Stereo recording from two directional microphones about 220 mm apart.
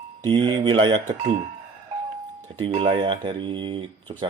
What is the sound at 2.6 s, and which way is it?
Speech, 25° right (ahead or behind).